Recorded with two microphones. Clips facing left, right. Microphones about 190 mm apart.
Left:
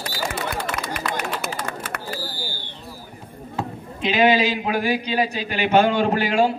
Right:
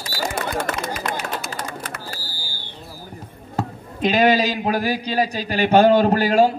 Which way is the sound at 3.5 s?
40° right (ahead or behind).